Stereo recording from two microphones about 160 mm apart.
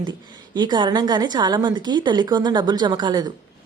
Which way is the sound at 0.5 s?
25° right (ahead or behind).